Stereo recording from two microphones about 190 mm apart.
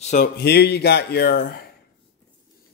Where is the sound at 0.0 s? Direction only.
40° left (ahead or behind).